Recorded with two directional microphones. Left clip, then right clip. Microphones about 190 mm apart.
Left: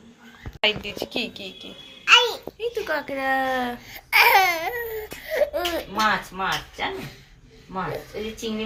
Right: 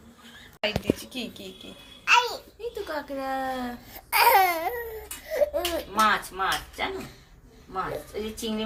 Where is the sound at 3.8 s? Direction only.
35° right (ahead or behind).